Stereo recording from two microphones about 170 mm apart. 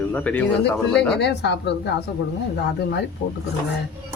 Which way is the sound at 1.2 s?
80° left.